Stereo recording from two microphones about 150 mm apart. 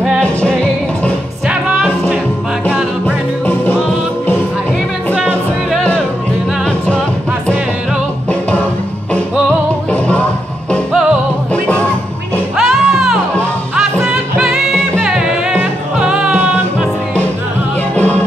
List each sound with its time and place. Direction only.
0.0 s music: 5° left (ahead or behind)
1.5 s music: 10° right (ahead or behind)
5.1 s music: 5° right (ahead or behind)
8.3 s music: 10° left (ahead or behind)
9.8 s music: 10° left (ahead or behind)
12.5 s music: 5° right (ahead or behind)
14.4 s music: 5° right (ahead or behind)
17.9 s music: 10° left (ahead or behind)